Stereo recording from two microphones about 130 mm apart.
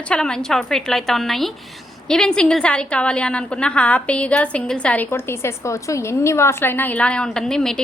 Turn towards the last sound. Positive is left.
turn(degrees=5)  # may be behind; listen again after turning